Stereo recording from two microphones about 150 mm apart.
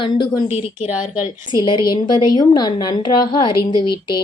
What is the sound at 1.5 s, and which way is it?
A woman's voice, 30° left (ahead or behind).